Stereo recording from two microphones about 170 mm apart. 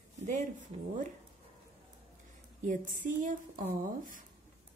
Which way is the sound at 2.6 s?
50° right (ahead or behind).